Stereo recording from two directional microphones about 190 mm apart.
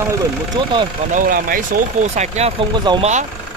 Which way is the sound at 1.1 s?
45° right (ahead or behind).